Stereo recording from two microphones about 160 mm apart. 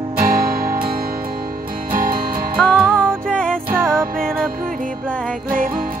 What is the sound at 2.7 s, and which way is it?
Music, 5° right (ahead or behind).